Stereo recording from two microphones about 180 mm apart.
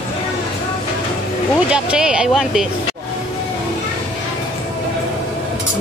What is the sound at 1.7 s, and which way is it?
Speech, 5° right (ahead or behind).